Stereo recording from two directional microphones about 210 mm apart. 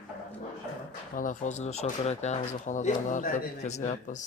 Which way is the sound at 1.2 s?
35° left (ahead or behind).